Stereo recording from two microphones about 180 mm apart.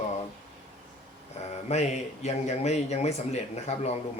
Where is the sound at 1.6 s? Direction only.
40° left (ahead or behind).